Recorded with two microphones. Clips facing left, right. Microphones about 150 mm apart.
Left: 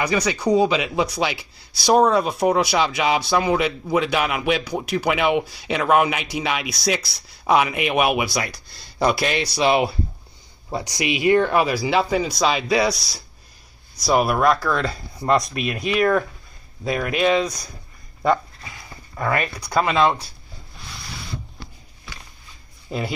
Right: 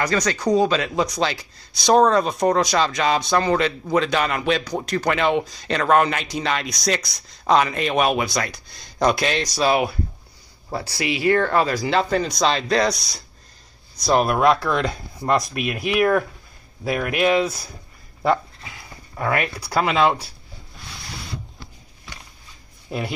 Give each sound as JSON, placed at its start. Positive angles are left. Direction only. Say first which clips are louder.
{"t": 0.0, "sound": "a man's voice", "louder": "even", "side_deg": 10}
{"t": 9.6, "sound": "a man's voice", "louder": "left 1 dB", "side_deg": 25}
{"t": 22.8, "sound": "speech", "louder": "left 1 dB", "side_deg": 0}